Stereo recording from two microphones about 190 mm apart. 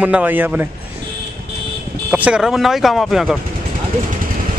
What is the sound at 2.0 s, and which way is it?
Speech, 5° right (ahead or behind).